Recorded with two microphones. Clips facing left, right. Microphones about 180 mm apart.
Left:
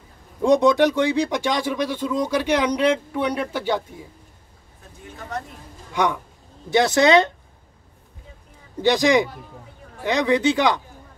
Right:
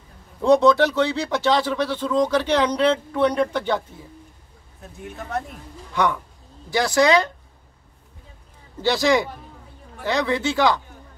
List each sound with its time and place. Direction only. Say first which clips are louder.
0.4 s speech: even; 15° left (ahead or behind)
6.7 s speech: left 2 dB; 25° left (ahead or behind)
8.8 s speech: left 2 dB; 15° left (ahead or behind)